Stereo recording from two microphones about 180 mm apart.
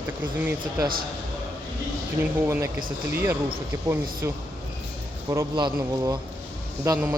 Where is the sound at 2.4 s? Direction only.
15° right (ahead or behind).